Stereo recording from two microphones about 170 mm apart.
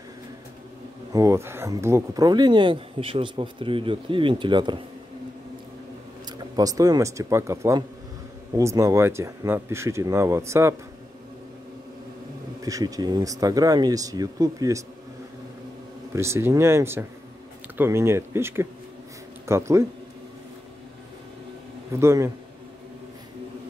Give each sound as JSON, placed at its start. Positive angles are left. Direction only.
{"t": 1.1, "sound": "speech", "side_deg": -15}
{"t": 6.3, "sound": "speech", "side_deg": -20}
{"t": 12.6, "sound": "speech", "side_deg": -20}
{"t": 16.1, "sound": "speech", "side_deg": -15}
{"t": 22.0, "sound": "speech", "side_deg": -15}